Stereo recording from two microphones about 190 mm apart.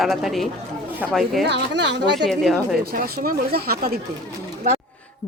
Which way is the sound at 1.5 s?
65° right (ahead or behind).